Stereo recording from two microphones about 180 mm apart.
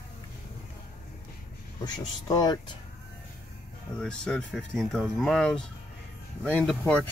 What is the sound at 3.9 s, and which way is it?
Speech, 5° left (ahead or behind).